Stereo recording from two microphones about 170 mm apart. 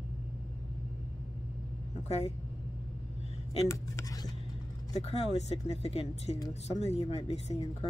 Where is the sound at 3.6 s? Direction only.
20° left (ahead or behind).